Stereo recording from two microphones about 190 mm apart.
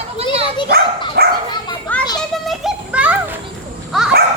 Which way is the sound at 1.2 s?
55° right (ahead or behind).